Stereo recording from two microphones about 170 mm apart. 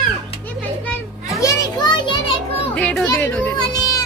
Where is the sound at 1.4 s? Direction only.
20° left (ahead or behind).